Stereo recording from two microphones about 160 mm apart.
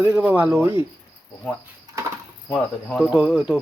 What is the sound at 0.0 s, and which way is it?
Speech, 10° right (ahead or behind).